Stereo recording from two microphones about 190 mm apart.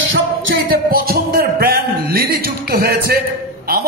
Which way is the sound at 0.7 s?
50° right (ahead or behind).